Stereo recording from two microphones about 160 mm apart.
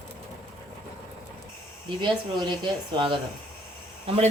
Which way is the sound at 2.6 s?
30° right (ahead or behind).